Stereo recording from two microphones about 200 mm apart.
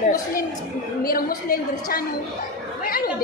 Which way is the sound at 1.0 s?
45° left (ahead or behind).